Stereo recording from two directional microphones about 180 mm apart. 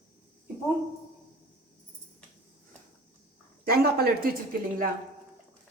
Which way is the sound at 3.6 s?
60° right (ahead or behind).